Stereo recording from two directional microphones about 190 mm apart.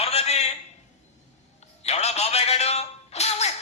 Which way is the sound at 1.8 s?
35° left (ahead or behind).